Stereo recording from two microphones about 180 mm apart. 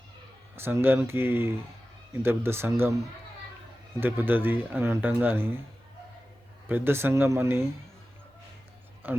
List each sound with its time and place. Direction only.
0.5 s speech: 10° right (ahead or behind)
4.0 s speech: 10° right (ahead or behind)
6.7 s speech: 10° right (ahead or behind)
9.0 s speech: 10° right (ahead or behind)